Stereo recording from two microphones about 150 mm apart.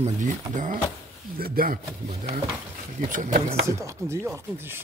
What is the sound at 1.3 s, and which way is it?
Speech, 85° right.